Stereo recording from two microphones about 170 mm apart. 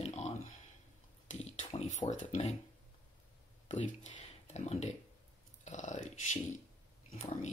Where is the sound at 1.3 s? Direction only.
40° left (ahead or behind).